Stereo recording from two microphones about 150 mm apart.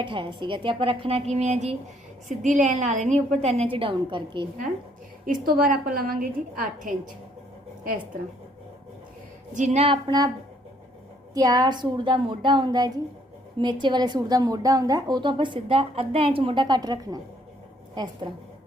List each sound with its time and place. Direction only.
0.0 s a woman's voice: 35° right (ahead or behind)
5.5 s a woman's voice: 75° right (ahead or behind)
9.6 s a woman's voice: 50° right (ahead or behind); by 10.3 s 25° right (ahead or behind)
11.3 s a woman's voice: 25° right (ahead or behind)